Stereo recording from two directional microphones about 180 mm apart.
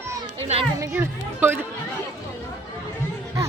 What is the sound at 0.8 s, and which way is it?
Speech, 10° right (ahead or behind).